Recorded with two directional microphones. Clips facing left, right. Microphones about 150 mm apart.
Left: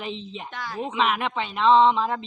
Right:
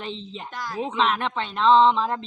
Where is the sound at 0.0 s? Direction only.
5° left (ahead or behind).